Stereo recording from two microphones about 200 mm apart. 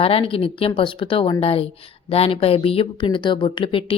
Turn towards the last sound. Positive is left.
turn(degrees=25)  # may be behind; listen again after turning